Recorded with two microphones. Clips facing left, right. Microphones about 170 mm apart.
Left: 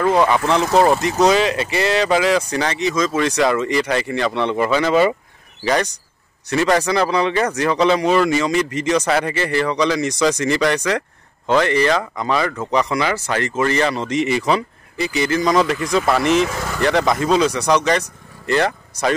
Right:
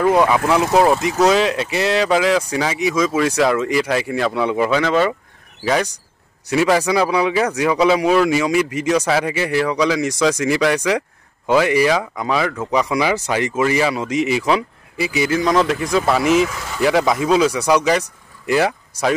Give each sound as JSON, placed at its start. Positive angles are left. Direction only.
{"t": 0.0, "sound": "speech", "side_deg": -10}